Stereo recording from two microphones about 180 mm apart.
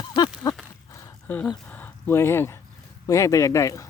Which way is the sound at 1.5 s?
10° left (ahead or behind).